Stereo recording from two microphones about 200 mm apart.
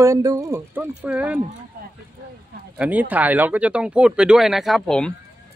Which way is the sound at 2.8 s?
10° right (ahead or behind).